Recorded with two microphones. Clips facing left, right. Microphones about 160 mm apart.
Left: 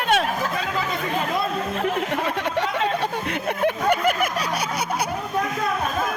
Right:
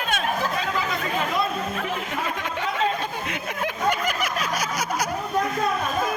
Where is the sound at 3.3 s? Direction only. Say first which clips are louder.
Left 6 dB; 55° left (ahead or behind).